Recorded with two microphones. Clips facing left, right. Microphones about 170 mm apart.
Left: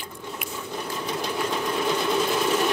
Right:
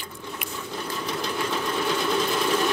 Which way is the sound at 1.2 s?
10° left (ahead or behind).